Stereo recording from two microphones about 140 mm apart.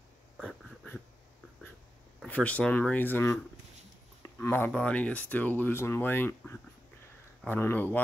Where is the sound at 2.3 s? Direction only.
10° left (ahead or behind).